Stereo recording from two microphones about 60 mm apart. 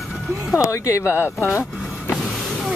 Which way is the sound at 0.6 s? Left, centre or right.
Left.